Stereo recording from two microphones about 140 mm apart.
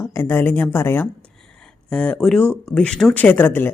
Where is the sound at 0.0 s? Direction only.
20° left (ahead or behind).